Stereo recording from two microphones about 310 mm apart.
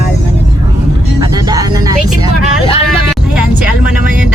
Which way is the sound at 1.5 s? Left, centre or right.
Centre.